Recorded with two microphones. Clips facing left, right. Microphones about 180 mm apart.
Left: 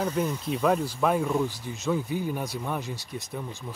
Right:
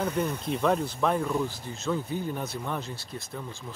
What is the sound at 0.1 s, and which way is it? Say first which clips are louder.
Speech: left 1 dB; 60° right (ahead or behind).